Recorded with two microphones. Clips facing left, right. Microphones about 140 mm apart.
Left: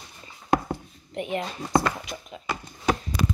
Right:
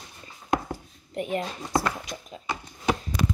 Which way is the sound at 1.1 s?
45° right (ahead or behind).